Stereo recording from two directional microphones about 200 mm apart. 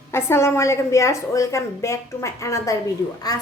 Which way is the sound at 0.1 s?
10° left (ahead or behind).